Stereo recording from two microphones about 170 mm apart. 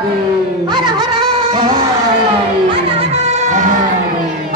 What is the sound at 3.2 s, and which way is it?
Music, 40° right (ahead or behind).